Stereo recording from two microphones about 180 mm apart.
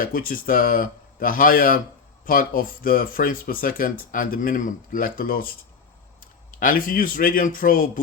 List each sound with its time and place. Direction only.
0.0 s speech: 50° left (ahead or behind)
6.5 s speech: 50° left (ahead or behind)